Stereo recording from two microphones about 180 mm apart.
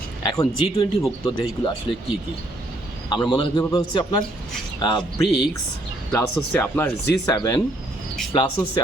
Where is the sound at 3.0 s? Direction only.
25° left (ahead or behind).